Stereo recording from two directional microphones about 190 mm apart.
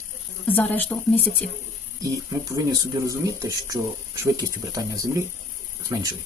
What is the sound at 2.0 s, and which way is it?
Speech, 15° right (ahead or behind).